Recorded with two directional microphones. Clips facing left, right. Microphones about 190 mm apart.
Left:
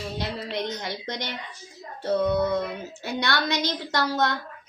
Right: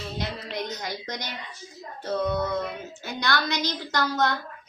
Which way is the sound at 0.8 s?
25° left (ahead or behind).